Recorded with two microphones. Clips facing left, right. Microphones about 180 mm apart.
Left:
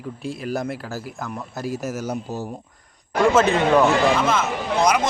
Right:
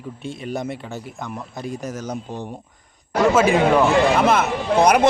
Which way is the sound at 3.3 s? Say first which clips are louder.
Right 1 dB; 10° right (ahead or behind).